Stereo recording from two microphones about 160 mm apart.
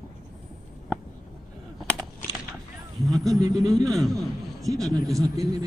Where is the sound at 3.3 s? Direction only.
20° right (ahead or behind).